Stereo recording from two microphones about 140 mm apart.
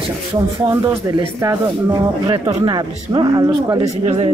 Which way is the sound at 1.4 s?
30° right (ahead or behind).